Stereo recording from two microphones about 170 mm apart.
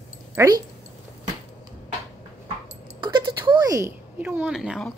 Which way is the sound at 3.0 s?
25° right (ahead or behind).